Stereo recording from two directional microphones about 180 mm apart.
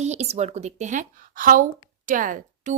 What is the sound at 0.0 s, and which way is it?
A woman's voice, 40° right (ahead or behind).